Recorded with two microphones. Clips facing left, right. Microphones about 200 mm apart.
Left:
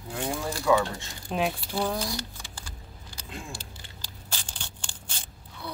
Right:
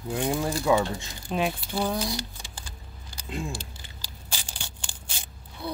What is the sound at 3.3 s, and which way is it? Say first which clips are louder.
Speech: right 7 dB; 15° right (ahead or behind).